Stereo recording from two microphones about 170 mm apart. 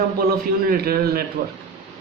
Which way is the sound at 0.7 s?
65° right (ahead or behind).